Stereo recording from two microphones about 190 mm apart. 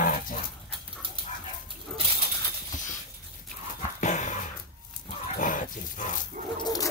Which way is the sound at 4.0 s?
40° left (ahead or behind).